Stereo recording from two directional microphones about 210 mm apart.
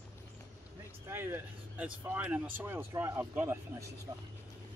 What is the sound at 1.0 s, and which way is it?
Speech, 10° right (ahead or behind).